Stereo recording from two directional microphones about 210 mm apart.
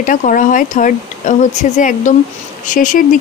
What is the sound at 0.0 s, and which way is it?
Speech, 40° left (ahead or behind).